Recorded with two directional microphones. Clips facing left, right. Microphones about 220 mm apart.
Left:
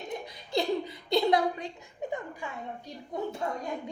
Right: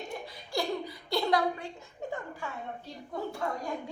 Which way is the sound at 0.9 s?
20° left (ahead or behind).